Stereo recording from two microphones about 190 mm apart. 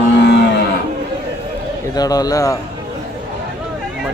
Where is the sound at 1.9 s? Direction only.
20° left (ahead or behind).